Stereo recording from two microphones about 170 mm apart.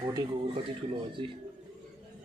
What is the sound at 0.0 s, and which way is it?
Speech, 20° right (ahead or behind).